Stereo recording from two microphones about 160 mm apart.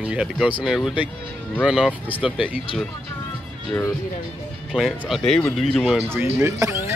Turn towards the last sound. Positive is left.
turn(degrees=-15)  # may be behind; listen again after turning